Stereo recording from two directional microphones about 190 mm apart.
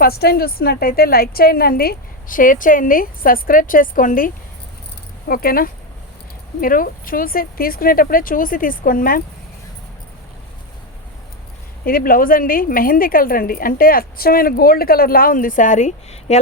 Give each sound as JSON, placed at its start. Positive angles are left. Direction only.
{"t": 0.0, "sound": "a woman's voice", "side_deg": 55}
{"t": 5.3, "sound": "a woman's voice", "side_deg": 50}
{"t": 11.9, "sound": "a woman's voice", "side_deg": 50}